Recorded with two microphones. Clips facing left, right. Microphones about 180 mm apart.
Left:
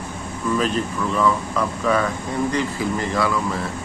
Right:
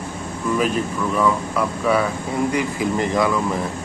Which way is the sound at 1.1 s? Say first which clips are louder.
Even; 10° right (ahead or behind).